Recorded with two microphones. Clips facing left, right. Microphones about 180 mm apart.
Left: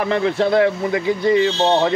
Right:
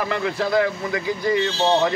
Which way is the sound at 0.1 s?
25° left (ahead or behind).